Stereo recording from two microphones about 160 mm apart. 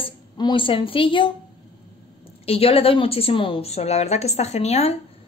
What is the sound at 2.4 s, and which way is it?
A woman's voice, 40° left (ahead or behind).